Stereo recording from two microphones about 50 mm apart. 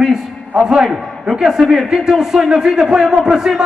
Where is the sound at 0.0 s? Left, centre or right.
Centre.